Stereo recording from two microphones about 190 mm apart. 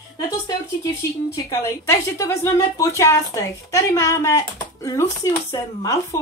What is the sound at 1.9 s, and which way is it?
A woman's voice, 15° left (ahead or behind).